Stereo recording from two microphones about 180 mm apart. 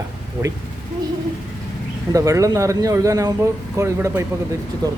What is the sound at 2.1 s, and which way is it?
Speech, 20° right (ahead or behind).